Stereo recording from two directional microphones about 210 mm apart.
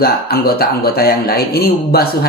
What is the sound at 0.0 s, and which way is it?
Speech, 45° left (ahead or behind).